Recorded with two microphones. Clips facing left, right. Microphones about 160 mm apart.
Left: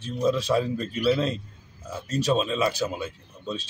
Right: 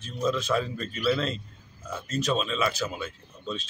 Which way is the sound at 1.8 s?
30° left (ahead or behind).